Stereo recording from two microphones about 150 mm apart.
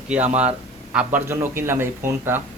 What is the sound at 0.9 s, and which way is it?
A man's voice, 15° right (ahead or behind).